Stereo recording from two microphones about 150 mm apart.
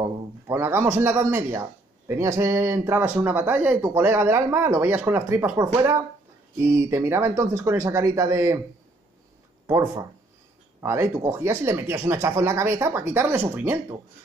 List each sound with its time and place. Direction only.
0.0 s a man's voice: 15° right (ahead or behind)
9.7 s a man's voice: 20° right (ahead or behind)